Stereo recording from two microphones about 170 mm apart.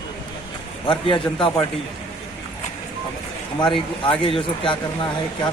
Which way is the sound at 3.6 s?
30° left (ahead or behind).